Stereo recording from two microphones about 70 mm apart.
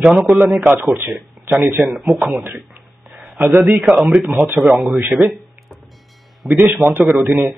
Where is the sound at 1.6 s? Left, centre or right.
Right.